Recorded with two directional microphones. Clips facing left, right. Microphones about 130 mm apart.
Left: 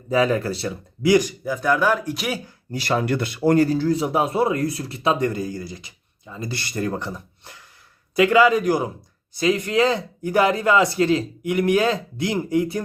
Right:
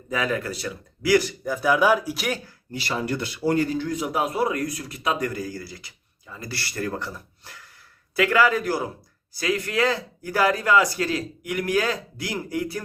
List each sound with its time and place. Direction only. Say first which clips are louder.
0.1 s speech: left 6 dB; 30° left (ahead or behind)
1.5 s speech: even; 5° right (ahead or behind)
2.7 s speech: left 5 dB; 55° left (ahead or behind); by 12.8 s 20° left (ahead or behind)